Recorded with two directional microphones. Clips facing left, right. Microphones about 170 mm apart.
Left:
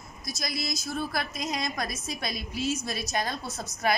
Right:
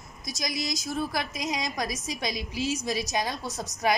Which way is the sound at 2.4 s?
90° right.